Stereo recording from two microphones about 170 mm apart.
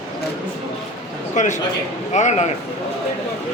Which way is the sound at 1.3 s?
45° left (ahead or behind).